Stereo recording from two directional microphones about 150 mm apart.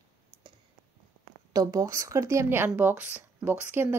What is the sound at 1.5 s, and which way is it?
A woman's voice, 25° right (ahead or behind).